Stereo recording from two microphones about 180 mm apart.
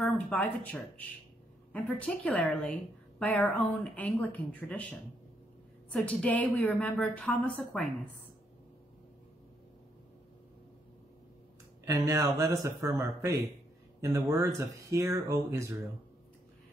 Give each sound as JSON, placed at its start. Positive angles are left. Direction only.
{"t": 0.0, "sound": "a woman's voice", "side_deg": 5}
{"t": 11.8, "sound": "speech", "side_deg": -15}